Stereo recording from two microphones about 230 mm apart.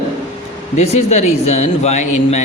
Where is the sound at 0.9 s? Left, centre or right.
Left.